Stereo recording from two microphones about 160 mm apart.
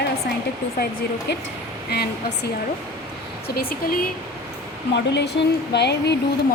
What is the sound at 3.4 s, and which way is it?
Speech, 65° left (ahead or behind).